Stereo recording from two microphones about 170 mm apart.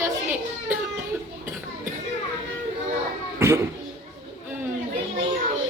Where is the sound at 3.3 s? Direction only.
15° right (ahead or behind).